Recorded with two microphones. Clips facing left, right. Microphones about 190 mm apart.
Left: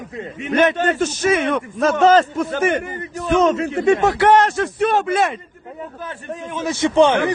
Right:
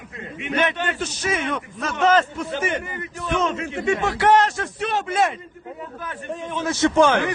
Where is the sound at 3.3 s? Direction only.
40° left (ahead or behind).